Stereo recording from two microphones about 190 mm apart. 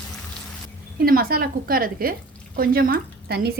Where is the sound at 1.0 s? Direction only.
50° right (ahead or behind).